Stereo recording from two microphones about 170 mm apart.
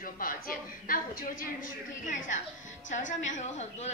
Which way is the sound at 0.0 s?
55° left (ahead or behind).